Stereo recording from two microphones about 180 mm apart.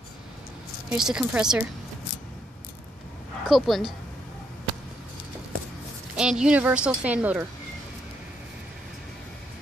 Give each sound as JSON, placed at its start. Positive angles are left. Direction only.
{"t": 0.8, "sound": "a woman's voice", "side_deg": -5}
{"t": 3.4, "sound": "a woman's voice", "side_deg": 0}
{"t": 6.1, "sound": "a woman's voice", "side_deg": -5}